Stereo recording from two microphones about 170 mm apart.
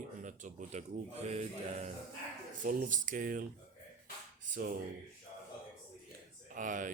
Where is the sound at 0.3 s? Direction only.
45° right (ahead or behind).